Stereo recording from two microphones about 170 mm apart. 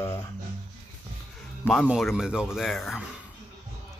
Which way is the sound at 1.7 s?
Centre (ahead or behind).